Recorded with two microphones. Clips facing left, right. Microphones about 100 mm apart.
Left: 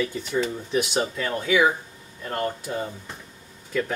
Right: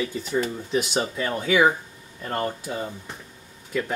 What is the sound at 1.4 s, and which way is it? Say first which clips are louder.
Speech: right 1 dB; 45° right (ahead or behind).